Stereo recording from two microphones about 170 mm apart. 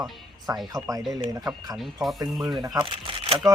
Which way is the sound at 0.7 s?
20° right (ahead or behind).